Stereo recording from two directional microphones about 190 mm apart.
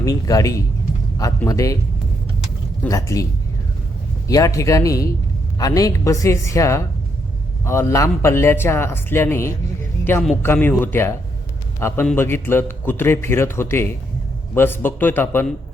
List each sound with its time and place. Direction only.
0.0 s a man's voice: 20° left (ahead or behind)
2.8 s a man's voice: 15° left (ahead or behind)
4.3 s a man's voice: 15° left (ahead or behind)